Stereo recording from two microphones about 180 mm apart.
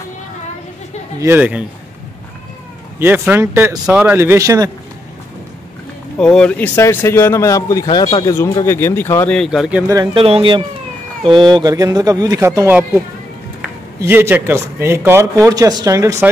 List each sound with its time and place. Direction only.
1.2 s a man's voice: 10° right (ahead or behind)
3.0 s a man's voice: 10° right (ahead or behind)
6.1 s a man's voice: 5° left (ahead or behind); by 8.4 s 30° left (ahead or behind)
8.4 s a man's voice: 15° left (ahead or behind); by 9.8 s 5° right (ahead or behind)
9.8 s speech: 20° right (ahead or behind)
10.2 s a man's voice: 30° right (ahead or behind)